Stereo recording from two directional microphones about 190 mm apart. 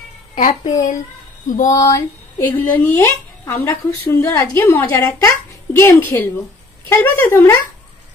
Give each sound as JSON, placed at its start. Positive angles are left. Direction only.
{"t": 0.3, "sound": "a woman's voice", "side_deg": 35}
{"t": 1.7, "sound": "speech", "side_deg": 15}